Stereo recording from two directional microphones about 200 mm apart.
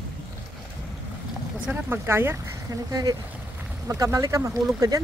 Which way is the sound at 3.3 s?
10° right (ahead or behind).